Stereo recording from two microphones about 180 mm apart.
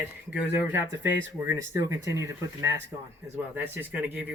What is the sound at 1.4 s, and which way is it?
A man's voice, 15° right (ahead or behind).